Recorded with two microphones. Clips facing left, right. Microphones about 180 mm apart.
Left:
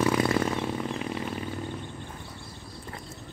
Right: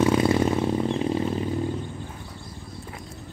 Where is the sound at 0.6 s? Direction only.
30° right (ahead or behind).